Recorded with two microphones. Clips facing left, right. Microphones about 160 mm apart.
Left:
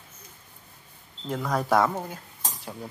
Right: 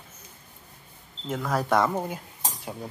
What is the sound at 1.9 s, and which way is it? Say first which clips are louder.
Cutlery: right 4 dB; 15° right (ahead or behind).